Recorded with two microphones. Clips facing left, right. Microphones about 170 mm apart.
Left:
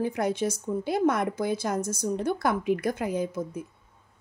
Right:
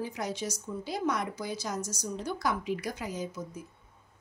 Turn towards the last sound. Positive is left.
turn(degrees=55)  # may be behind; listen again after turning